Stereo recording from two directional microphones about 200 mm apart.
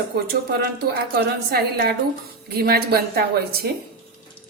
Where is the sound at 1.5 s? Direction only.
50° right (ahead or behind).